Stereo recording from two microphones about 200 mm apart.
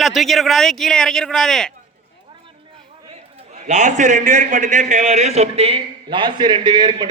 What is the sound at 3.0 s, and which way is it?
A man's voice, 35° right (ahead or behind).